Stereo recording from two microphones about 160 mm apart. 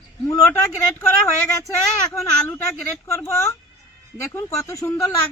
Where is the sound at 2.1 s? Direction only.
15° left (ahead or behind).